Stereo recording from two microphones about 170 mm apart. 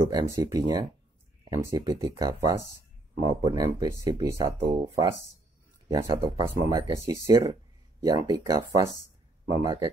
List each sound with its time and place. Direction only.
0.1 s speech: 20° right (ahead or behind)